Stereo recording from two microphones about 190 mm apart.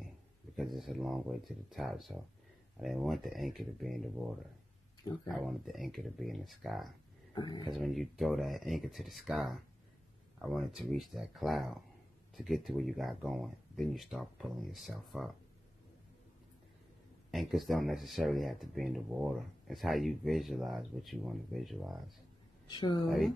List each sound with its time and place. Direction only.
0.6 s speech: centre (ahead or behind)
5.3 s speech: centre (ahead or behind)
7.3 s a woman's voice: 20° left (ahead or behind)
7.8 s speech: centre (ahead or behind)
17.3 s speech: centre (ahead or behind)
22.7 s a woman's voice: 25° left (ahead or behind)
23.0 s speech: centre (ahead or behind)